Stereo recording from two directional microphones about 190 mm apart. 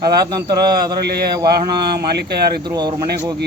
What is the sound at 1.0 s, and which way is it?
Speech, 55° right (ahead or behind).